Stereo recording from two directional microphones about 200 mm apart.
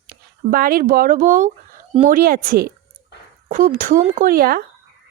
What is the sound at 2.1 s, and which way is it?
Speech, 45° right (ahead or behind).